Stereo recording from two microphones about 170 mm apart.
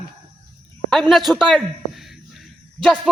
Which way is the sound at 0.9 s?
Centre (ahead or behind).